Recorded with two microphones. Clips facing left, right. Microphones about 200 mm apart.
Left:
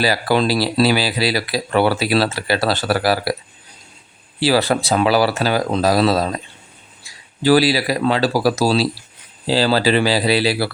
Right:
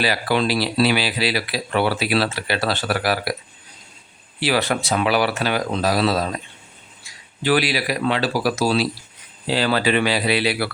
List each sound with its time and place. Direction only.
0.0 s speech: 40° left (ahead or behind)
4.4 s speech: 35° left (ahead or behind)
7.4 s speech: 35° left (ahead or behind)